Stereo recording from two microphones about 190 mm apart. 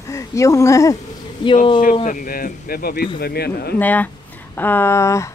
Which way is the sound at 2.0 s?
45° left (ahead or behind).